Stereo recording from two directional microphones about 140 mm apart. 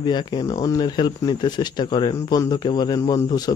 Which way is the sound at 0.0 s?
30° left (ahead or behind).